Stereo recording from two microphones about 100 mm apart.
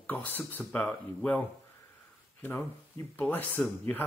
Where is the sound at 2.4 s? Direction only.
20° left (ahead or behind).